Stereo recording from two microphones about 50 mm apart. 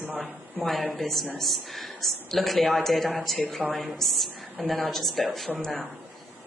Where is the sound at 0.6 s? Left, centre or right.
Centre.